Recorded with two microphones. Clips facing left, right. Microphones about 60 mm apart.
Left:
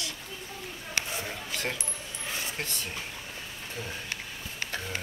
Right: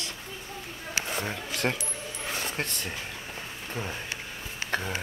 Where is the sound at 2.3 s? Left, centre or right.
Right.